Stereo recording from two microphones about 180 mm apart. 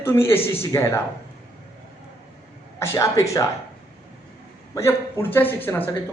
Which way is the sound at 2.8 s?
15° left (ahead or behind).